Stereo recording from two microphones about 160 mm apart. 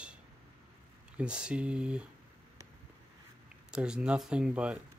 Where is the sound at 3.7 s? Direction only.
5° right (ahead or behind).